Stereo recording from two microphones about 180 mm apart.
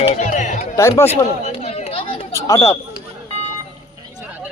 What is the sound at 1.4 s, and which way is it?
Chatter, 35° left (ahead or behind).